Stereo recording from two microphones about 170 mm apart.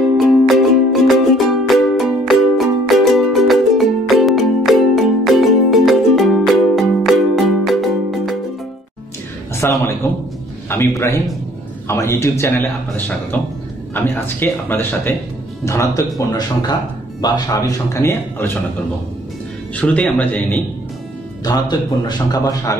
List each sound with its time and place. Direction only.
0.2 s music: centre (ahead or behind)
9.6 s a sound: 15° left (ahead or behind)
10.7 s a man's voice: 15° left (ahead or behind)
17.2 s a man's voice: 20° left (ahead or behind)
19.7 s a man's voice: 10° left (ahead or behind)
21.5 s speech: 25° left (ahead or behind)